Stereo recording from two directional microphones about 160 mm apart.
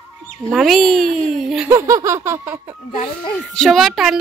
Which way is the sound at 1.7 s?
20° right (ahead or behind).